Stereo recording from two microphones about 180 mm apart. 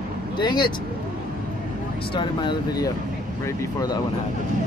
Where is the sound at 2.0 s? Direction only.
25° left (ahead or behind).